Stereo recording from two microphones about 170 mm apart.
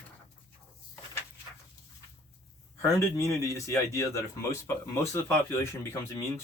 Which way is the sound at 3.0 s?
15° left (ahead or behind).